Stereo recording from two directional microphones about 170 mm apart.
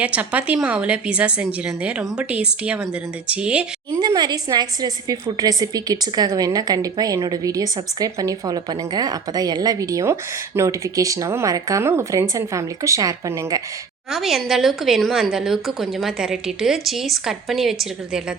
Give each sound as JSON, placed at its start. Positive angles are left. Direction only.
{"t": 0.0, "sound": "a woman's voice", "side_deg": -10}
{"t": 4.0, "sound": "a woman's voice", "side_deg": -25}
{"t": 14.1, "sound": "a woman's voice", "side_deg": 0}